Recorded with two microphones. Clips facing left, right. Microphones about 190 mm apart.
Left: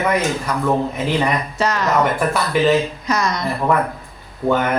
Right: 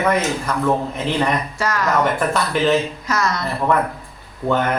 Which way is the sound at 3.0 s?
20° left (ahead or behind).